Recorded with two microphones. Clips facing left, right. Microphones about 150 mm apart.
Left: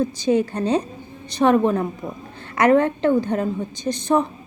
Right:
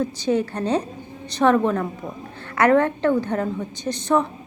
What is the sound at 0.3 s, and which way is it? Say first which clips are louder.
A woman's voice: left 2 dB; 15° left (ahead or behind).